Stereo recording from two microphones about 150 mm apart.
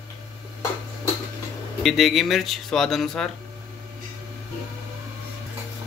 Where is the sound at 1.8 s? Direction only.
Centre (ahead or behind).